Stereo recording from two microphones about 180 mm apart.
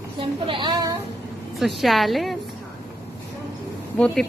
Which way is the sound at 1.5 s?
Centre (ahead or behind).